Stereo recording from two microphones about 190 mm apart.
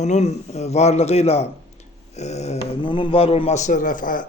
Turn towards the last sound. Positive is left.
turn(degrees=45)  # may be behind; listen again after turning